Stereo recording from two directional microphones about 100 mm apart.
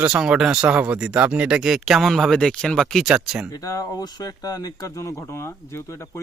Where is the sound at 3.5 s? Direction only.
35° left (ahead or behind).